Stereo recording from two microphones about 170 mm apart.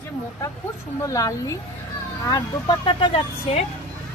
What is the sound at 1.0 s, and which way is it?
Speech, 20° left (ahead or behind).